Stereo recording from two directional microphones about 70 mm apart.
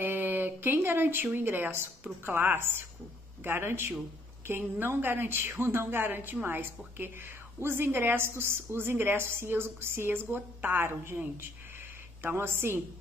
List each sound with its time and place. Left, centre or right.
0.0 s a woman's voice: right